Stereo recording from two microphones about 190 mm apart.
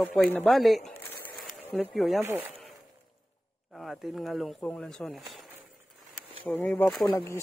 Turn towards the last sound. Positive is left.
turn(degrees=15)  # may be behind; listen again after turning